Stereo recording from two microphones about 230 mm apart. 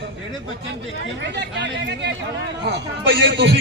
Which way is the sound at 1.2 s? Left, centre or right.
Right.